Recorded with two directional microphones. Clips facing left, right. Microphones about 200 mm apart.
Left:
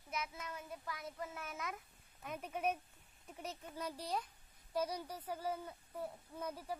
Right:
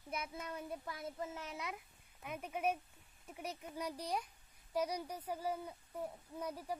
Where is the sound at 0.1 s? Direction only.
30° right (ahead or behind).